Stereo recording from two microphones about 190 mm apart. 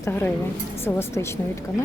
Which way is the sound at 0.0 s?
10° left (ahead or behind).